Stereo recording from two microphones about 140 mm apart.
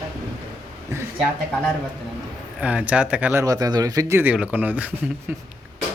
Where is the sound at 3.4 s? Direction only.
25° right (ahead or behind).